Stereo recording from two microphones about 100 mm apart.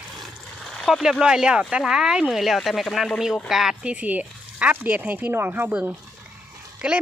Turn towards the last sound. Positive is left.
turn(degrees=-10)  # may be behind; listen again after turning